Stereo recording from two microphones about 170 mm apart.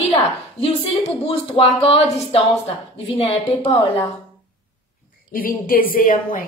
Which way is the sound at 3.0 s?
35° left (ahead or behind).